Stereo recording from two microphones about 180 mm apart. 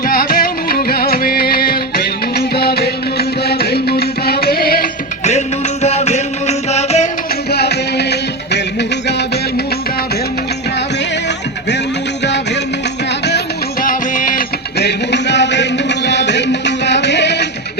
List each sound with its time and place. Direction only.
0.0 s music: 55° left (ahead or behind)
5.8 s music: 35° left (ahead or behind)
7.5 s music: 65° left (ahead or behind)
13.8 s music: 45° left (ahead or behind); by 17.4 s 70° left (ahead or behind)